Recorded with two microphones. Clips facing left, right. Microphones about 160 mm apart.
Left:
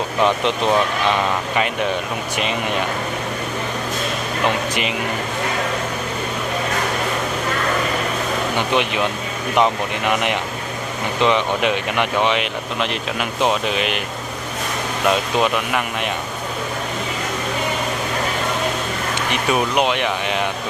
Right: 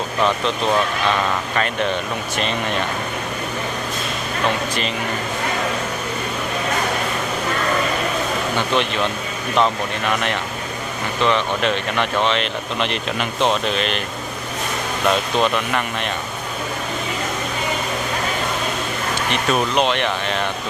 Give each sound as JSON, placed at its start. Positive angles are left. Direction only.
{"t": 0.2, "sound": "speech", "side_deg": 15}
{"t": 4.4, "sound": "speech", "side_deg": 15}
{"t": 8.5, "sound": "speech", "side_deg": 15}
{"t": 15.0, "sound": "speech", "side_deg": 10}
{"t": 19.1, "sound": "speech", "side_deg": 10}